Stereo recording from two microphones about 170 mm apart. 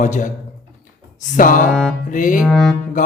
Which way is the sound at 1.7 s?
5° left (ahead or behind).